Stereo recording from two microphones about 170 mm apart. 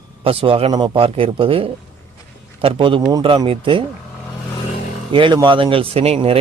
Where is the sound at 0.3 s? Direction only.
35° right (ahead or behind).